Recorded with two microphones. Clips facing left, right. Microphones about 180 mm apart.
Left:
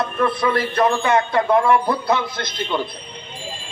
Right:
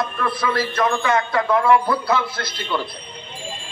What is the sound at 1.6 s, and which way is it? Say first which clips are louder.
Speech: even; 20° left (ahead or behind).